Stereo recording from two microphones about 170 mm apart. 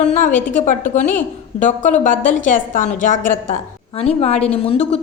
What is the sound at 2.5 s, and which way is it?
Speech, 50° left (ahead or behind).